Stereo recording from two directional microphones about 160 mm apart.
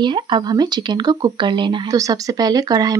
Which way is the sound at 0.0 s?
30° right (ahead or behind).